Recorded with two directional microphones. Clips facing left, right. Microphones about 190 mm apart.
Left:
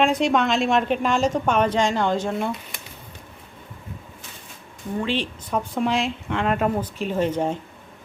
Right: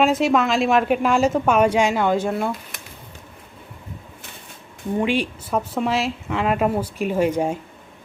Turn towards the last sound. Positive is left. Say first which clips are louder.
# right 2 dB
turn(degrees=-10)  # may be behind; listen again after turning